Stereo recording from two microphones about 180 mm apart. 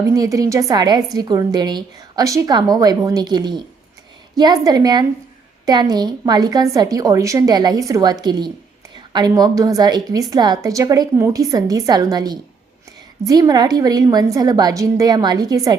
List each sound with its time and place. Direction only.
0.1 s a woman's voice: 20° right (ahead or behind)